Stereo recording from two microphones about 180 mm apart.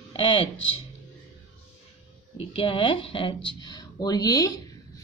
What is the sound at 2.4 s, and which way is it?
A woman's voice, 30° left (ahead or behind).